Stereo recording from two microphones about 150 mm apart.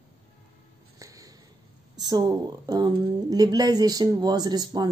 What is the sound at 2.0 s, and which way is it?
A woman's voice, 30° right (ahead or behind).